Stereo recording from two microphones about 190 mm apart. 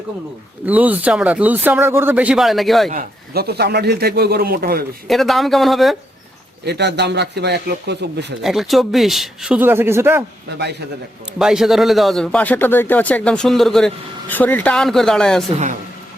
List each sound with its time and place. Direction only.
0.6 s speech: 10° right (ahead or behind)
2.9 s speech: 50° right (ahead or behind)
5.0 s speech: centre (ahead or behind)
6.7 s speech: 65° right (ahead or behind)
8.4 s speech: centre (ahead or behind)
10.6 s speech: 60° right (ahead or behind)
11.3 s speech: centre (ahead or behind)